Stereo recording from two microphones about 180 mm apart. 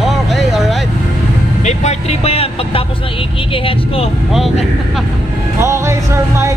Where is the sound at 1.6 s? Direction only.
40° left (ahead or behind).